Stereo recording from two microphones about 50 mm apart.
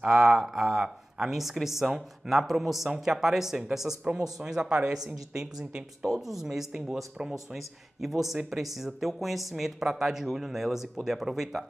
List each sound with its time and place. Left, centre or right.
0.0 s speech: centre